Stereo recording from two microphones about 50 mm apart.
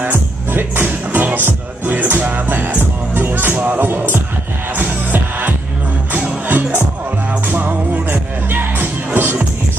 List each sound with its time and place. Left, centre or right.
0.0 s music: right
2.6 s music: right
3.5 s speech: right
4.7 s music: right